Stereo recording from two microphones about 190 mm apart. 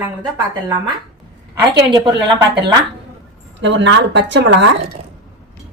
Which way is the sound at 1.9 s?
25° right (ahead or behind).